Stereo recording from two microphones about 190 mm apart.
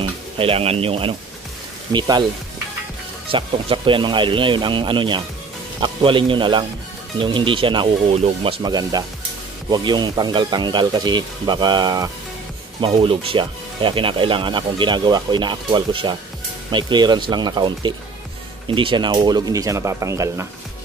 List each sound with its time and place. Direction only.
0.0 s speech: 30° right (ahead or behind)
3.3 s speech: 25° right (ahead or behind)